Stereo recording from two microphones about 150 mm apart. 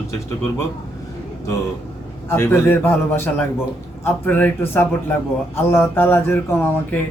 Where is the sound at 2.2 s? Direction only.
15° left (ahead or behind).